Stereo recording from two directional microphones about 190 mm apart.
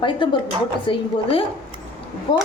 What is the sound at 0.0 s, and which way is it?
A woman's voice, 25° left (ahead or behind).